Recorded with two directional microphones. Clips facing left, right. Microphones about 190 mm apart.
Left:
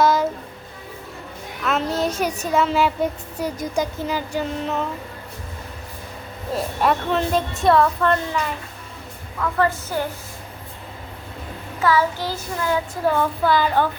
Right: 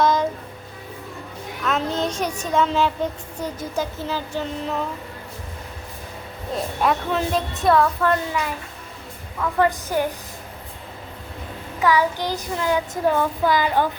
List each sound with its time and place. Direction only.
0.0 s music: 5° left (ahead or behind)
1.6 s a sound: 5° left (ahead or behind)
2.4 s a woman's voice: 5° left (ahead or behind)
6.5 s a woman's voice: centre (ahead or behind)
9.4 s child singing: 15° right (ahead or behind)
11.8 s child singing: 15° right (ahead or behind)